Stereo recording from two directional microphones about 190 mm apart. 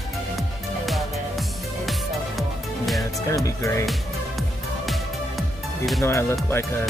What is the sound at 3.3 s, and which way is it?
Speech, 15° left (ahead or behind).